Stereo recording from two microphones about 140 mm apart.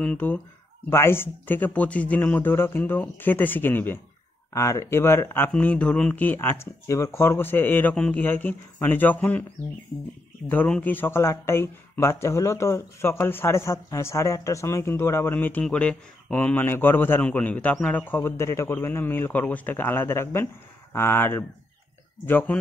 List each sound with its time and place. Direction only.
0.0 s speech: 10° left (ahead or behind)
10.5 s speech: 10° left (ahead or behind)